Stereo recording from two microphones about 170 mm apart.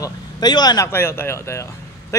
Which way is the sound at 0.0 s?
25° left (ahead or behind).